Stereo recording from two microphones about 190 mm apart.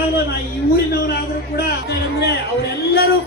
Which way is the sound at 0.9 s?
60° left (ahead or behind).